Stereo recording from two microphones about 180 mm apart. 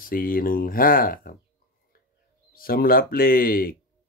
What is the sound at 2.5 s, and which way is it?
Speech, 55° left (ahead or behind).